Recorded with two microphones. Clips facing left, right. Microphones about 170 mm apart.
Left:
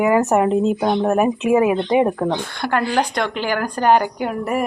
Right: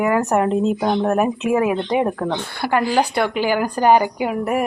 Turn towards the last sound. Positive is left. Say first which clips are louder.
# right 1 dB
turn(degrees=-5)  # may be behind; listen again after turning